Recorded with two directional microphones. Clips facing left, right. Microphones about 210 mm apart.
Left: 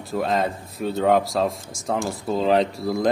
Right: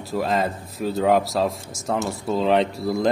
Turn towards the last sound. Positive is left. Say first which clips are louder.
# even
turn(degrees=0)  # may be behind; listen again after turning